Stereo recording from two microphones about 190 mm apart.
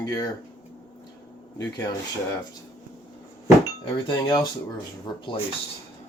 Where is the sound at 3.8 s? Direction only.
20° left (ahead or behind).